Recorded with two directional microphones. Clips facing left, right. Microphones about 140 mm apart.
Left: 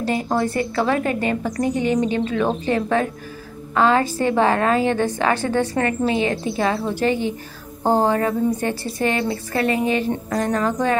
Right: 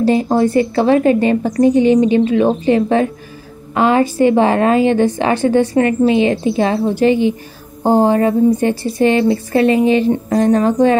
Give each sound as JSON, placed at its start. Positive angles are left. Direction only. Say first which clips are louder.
{"t": 0.0, "sound": "a woman's voice", "louder": "right 8 dB", "side_deg": -25}